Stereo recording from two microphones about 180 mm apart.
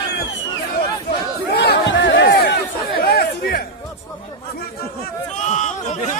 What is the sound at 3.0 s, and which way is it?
Chatter, 60° left (ahead or behind).